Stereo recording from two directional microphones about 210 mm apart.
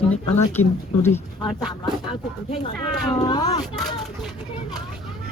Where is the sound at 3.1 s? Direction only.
20° left (ahead or behind).